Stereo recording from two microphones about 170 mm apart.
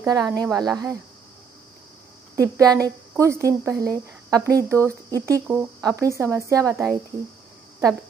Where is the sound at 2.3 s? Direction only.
20° right (ahead or behind).